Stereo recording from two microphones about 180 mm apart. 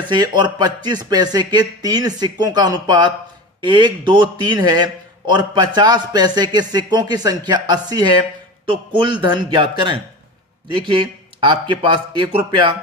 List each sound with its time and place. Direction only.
0.1 s a man's voice: 25° right (ahead or behind)